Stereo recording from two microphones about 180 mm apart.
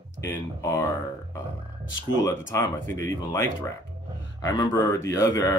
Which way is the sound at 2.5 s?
15° left (ahead or behind).